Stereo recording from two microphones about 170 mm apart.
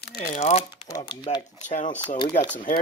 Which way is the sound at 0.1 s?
50° left (ahead or behind).